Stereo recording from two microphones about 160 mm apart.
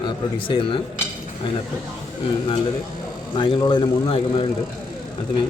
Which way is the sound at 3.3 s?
30° left (ahead or behind).